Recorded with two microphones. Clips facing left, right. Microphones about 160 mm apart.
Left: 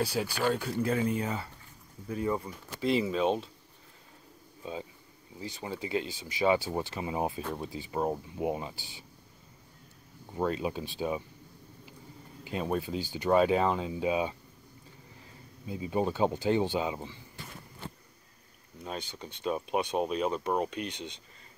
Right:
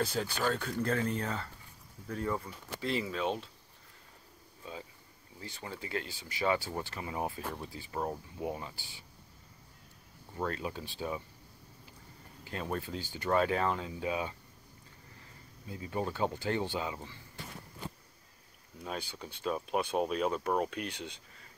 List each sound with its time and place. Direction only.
0.0 s speech: 10° left (ahead or behind)
5.4 s speech: 15° left (ahead or behind)
10.3 s speech: 20° left (ahead or behind)
12.4 s speech: 15° left (ahead or behind)
15.6 s speech: 20° left (ahead or behind)
18.9 s speech: 5° right (ahead or behind)